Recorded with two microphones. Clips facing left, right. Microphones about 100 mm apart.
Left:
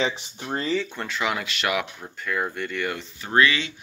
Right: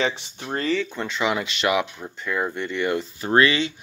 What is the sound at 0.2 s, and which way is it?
Speech, 5° left (ahead or behind).